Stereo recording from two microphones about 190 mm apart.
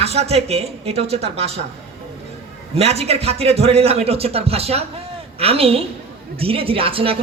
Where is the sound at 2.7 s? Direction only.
35° right (ahead or behind).